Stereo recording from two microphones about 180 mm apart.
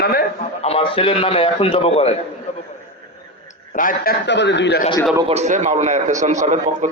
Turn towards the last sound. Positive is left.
turn(degrees=-40)  # may be behind; listen again after turning